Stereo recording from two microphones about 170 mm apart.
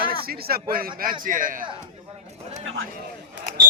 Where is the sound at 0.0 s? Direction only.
60° right (ahead or behind).